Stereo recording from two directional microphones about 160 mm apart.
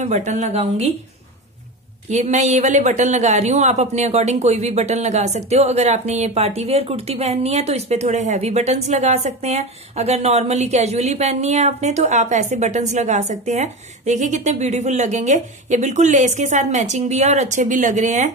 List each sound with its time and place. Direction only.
0.0 s speech: 45° right (ahead or behind)
2.0 s speech: 45° right (ahead or behind)